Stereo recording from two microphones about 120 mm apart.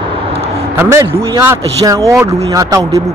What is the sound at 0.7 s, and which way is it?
Speech, 20° right (ahead or behind).